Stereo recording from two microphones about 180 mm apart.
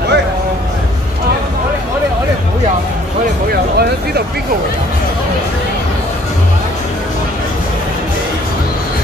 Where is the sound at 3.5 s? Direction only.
60° right (ahead or behind).